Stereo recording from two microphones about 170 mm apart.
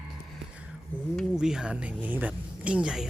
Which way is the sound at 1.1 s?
5° right (ahead or behind).